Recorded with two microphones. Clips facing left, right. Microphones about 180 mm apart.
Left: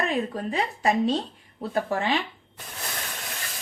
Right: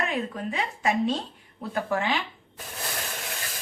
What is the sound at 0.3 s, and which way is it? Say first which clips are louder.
A woman's voice: left 3 dB; 35° left (ahead or behind).